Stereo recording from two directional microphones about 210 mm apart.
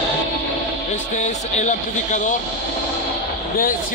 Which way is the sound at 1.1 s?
35° left (ahead or behind).